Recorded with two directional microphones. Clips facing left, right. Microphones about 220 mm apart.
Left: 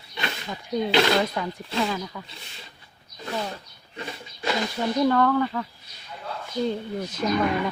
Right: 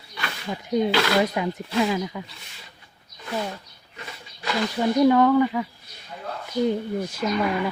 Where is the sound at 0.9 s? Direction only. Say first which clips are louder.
Left 2 dB; 20° left (ahead or behind).